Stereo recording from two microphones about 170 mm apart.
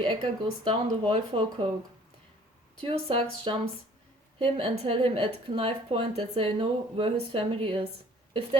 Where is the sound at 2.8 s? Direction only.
30° right (ahead or behind).